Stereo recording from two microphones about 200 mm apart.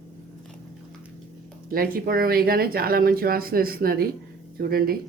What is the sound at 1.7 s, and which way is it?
Speech, 45° right (ahead or behind).